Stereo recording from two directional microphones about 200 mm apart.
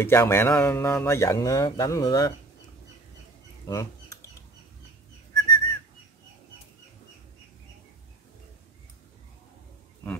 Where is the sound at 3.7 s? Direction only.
15° left (ahead or behind).